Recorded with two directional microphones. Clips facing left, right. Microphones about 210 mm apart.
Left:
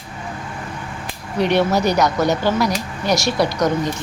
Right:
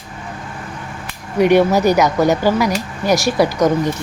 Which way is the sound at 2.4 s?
10° right (ahead or behind).